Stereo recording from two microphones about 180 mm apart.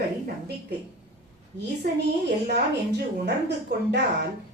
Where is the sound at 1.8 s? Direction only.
65° right (ahead or behind).